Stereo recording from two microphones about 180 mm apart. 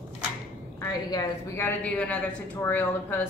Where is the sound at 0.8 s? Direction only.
15° left (ahead or behind).